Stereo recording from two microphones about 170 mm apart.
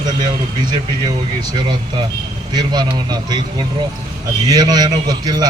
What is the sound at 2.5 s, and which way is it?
Speech, 25° right (ahead or behind).